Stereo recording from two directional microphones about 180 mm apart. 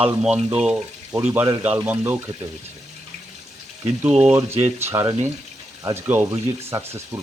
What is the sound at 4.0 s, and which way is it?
Speech, 5° right (ahead or behind).